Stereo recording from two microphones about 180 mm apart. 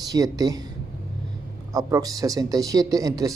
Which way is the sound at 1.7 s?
20° right (ahead or behind).